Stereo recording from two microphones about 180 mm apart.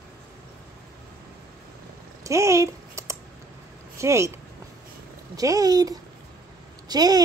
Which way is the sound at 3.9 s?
15° right (ahead or behind).